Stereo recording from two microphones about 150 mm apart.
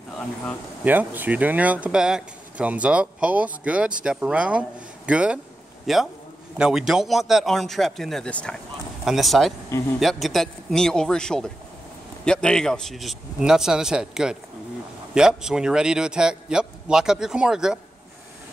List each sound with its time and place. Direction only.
0.8 s a man's voice: 10° right (ahead or behind)